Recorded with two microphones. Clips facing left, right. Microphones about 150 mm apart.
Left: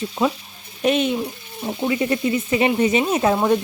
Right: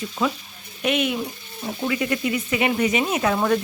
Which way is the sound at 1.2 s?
20° left (ahead or behind).